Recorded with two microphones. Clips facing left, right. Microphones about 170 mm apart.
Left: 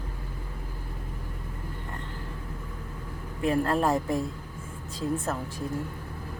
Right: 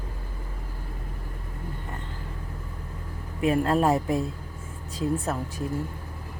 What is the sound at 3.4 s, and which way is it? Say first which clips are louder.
Speech: right 3 dB; 15° right (ahead or behind).